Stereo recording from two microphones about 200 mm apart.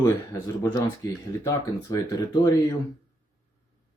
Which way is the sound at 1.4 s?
20° left (ahead or behind).